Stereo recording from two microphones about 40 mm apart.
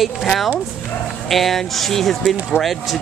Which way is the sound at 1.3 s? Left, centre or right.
Centre.